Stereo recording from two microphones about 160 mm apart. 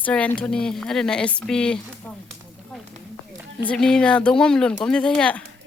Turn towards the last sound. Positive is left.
turn(degrees=5)  # may be behind; listen again after turning